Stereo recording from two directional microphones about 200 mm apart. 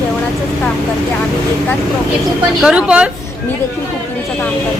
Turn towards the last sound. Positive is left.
turn(degrees=-5)  # may be behind; listen again after turning